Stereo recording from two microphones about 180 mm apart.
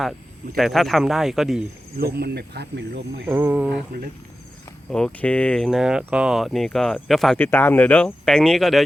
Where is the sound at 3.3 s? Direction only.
10° right (ahead or behind).